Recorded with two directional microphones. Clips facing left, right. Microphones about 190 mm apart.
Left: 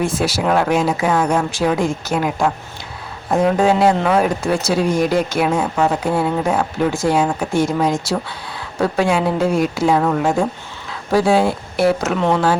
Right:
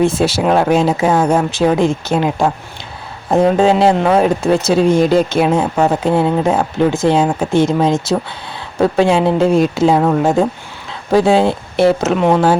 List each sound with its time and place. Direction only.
0.0 s speech: 25° right (ahead or behind)